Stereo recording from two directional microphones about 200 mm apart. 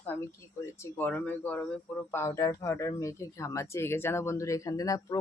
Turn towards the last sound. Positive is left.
turn(degrees=15)  # may be behind; listen again after turning